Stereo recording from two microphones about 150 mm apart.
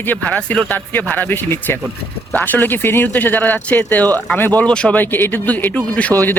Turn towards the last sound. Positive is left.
turn(degrees=10)  # may be behind; listen again after turning